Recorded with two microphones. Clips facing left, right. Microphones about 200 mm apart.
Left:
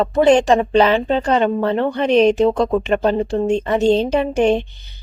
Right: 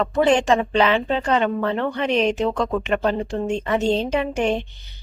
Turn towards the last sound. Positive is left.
turn(degrees=30)  # may be behind; listen again after turning